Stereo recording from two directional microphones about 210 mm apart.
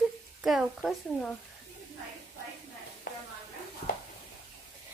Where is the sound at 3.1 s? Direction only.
45° left (ahead or behind).